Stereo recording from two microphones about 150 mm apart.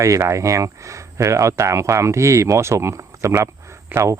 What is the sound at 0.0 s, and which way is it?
A man's voice, 20° right (ahead or behind).